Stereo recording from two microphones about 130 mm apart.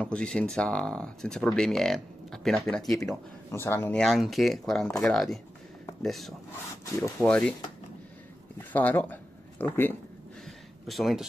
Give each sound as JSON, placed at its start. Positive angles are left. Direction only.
{"t": 0.0, "sound": "speech", "side_deg": 5}
{"t": 3.5, "sound": "speech", "side_deg": 20}
{"t": 4.0, "sound": "speech", "side_deg": 0}
{"t": 8.5, "sound": "speech", "side_deg": 15}
{"t": 10.4, "sound": "a sound", "side_deg": 0}